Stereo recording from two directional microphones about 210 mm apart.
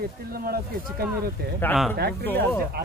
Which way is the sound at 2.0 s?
50° right (ahead or behind).